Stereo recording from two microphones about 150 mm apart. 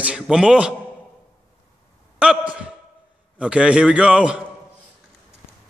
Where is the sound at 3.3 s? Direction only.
5° right (ahead or behind).